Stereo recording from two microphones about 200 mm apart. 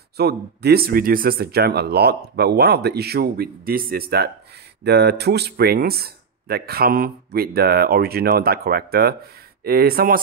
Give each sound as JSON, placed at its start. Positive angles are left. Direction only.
{"t": 0.2, "sound": "speech", "side_deg": -55}